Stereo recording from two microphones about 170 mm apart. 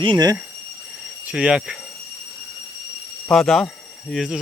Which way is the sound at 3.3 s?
Centre (ahead or behind).